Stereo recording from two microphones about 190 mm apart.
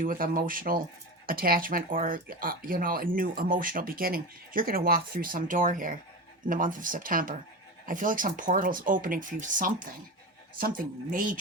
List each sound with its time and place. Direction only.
0.0 s speech: 45° right (ahead or behind)